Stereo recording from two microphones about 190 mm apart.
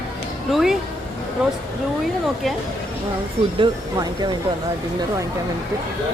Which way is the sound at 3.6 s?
20° right (ahead or behind).